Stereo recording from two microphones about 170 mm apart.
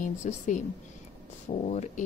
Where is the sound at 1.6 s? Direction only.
40° left (ahead or behind).